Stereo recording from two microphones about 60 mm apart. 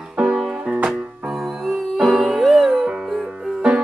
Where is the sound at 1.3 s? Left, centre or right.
Centre.